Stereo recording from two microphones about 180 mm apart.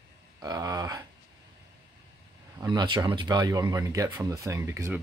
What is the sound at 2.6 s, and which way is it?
Speech, 20° right (ahead or behind).